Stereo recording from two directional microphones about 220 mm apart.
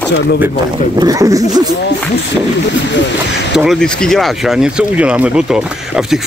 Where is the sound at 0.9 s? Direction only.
15° right (ahead or behind).